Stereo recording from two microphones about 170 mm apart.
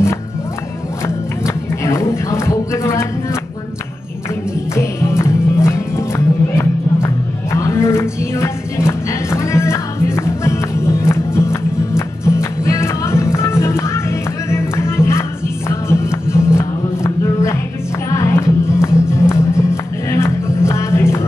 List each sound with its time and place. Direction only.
1.0 s music: 15° left (ahead or behind)
4.7 s music: 15° left (ahead or behind)
18.7 s music: 15° left (ahead or behind)